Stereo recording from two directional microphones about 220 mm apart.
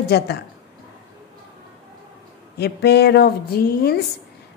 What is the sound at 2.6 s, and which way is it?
A woman's voice, 50° left (ahead or behind).